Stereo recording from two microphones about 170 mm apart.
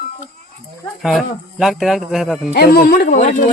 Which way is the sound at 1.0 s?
Centre (ahead or behind).